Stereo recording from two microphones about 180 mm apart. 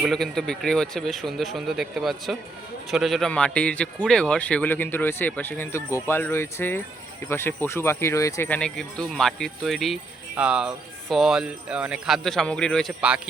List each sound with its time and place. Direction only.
0.0 s a man's voice: centre (ahead or behind)